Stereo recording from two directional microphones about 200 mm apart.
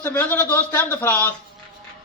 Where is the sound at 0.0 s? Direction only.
10° left (ahead or behind).